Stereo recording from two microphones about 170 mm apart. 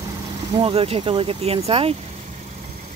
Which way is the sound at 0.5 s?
35° right (ahead or behind).